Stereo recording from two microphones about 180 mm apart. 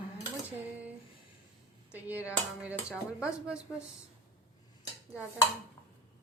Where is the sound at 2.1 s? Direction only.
10° right (ahead or behind).